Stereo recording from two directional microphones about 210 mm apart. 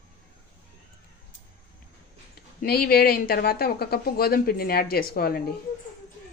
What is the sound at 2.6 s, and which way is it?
Speech, 45° left (ahead or behind).